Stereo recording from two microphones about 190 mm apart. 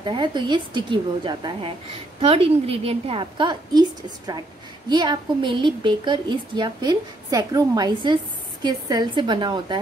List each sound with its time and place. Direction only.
0.0 s a woman's voice: 25° right (ahead or behind)
4.8 s a woman's voice: 20° right (ahead or behind)